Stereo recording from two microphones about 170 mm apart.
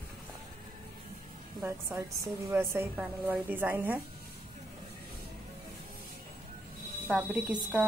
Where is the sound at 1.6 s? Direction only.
15° right (ahead or behind).